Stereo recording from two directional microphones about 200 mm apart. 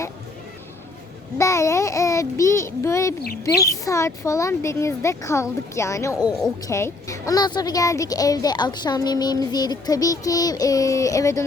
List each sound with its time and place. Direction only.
1.4 s a woman's voice: 15° left (ahead or behind)